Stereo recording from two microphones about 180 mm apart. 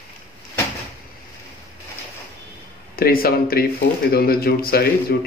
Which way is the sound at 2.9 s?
55° left (ahead or behind).